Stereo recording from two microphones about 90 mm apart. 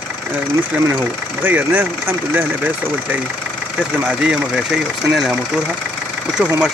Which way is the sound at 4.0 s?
15° right (ahead or behind).